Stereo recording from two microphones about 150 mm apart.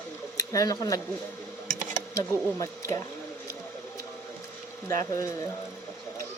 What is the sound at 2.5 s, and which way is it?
Speech, 20° left (ahead or behind).